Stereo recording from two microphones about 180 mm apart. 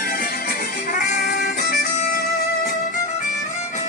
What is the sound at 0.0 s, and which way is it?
Music, 55° left (ahead or behind).